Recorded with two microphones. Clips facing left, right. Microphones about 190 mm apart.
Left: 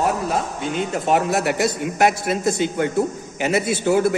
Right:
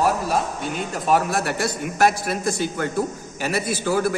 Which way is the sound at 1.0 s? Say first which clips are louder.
Left 1 dB; 20° left (ahead or behind).